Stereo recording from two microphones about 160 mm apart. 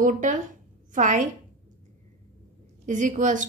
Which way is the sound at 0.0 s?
55° right (ahead or behind).